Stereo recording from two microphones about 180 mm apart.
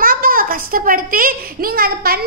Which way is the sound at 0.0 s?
50° right (ahead or behind).